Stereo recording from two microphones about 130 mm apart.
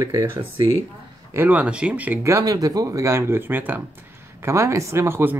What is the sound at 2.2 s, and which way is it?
Speech, 25° right (ahead or behind).